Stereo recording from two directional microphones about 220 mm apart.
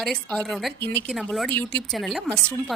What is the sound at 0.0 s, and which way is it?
A woman's voice, centre (ahead or behind).